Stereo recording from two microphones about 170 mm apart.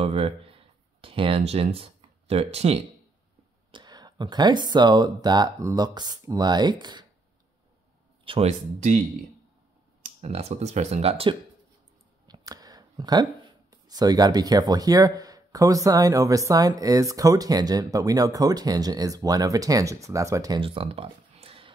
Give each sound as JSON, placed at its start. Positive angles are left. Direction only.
{"t": 0.0, "sound": "speech", "side_deg": -35}
{"t": 3.7, "sound": "speech", "side_deg": -25}
{"t": 8.3, "sound": "speech", "side_deg": -40}
{"t": 10.0, "sound": "speech", "side_deg": -40}
{"t": 12.3, "sound": "speech", "side_deg": -20}